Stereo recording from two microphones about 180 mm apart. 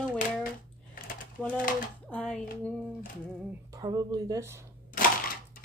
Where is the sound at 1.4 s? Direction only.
5° left (ahead or behind).